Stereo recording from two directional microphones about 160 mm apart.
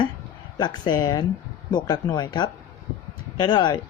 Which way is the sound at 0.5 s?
25° left (ahead or behind).